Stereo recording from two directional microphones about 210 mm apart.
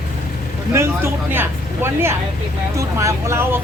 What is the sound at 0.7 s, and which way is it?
Speech, 10° right (ahead or behind).